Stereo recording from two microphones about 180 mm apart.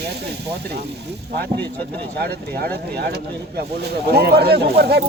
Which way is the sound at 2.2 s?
60° right (ahead or behind).